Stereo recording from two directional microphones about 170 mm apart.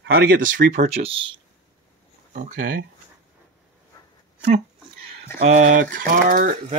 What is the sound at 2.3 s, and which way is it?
Speech, 50° right (ahead or behind).